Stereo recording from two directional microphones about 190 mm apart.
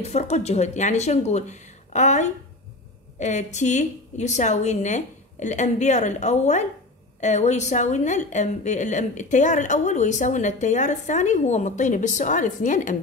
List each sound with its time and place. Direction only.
0.0 s a woman's voice: 35° left (ahead or behind)